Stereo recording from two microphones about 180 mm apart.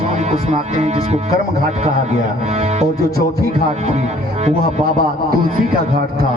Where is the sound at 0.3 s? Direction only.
35° right (ahead or behind).